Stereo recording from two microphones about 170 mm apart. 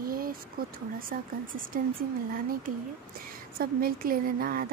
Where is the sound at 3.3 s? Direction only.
60° right (ahead or behind).